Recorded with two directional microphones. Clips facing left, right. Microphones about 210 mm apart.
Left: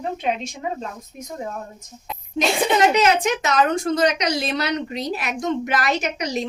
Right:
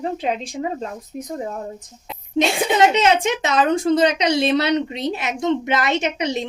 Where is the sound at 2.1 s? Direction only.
25° right (ahead or behind).